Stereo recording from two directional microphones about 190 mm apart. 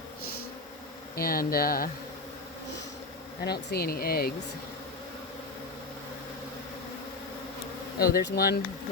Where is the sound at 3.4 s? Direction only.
55° left (ahead or behind).